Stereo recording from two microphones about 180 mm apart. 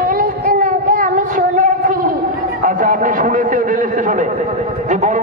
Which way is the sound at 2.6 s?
50° right (ahead or behind).